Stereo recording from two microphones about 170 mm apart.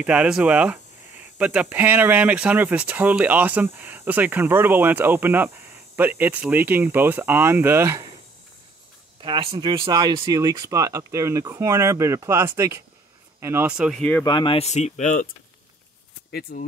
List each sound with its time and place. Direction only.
0.0 s speech: 5° right (ahead or behind)
9.2 s speech: 30° right (ahead or behind); by 14.0 s 5° right (ahead or behind)
14.2 s speech: 25° left (ahead or behind); by 15.2 s 45° left (ahead or behind)
16.3 s speech: 60° left (ahead or behind)